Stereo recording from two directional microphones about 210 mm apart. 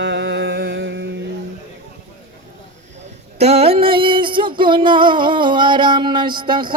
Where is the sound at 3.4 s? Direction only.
30° right (ahead or behind).